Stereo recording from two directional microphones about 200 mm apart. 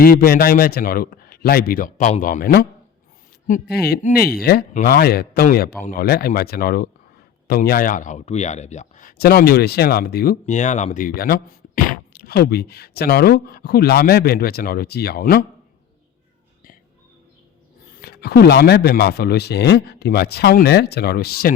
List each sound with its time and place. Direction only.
0.0 s speech: 50° left (ahead or behind)
10.4 s speech: 35° left (ahead or behind)
17.9 s speech: 55° left (ahead or behind)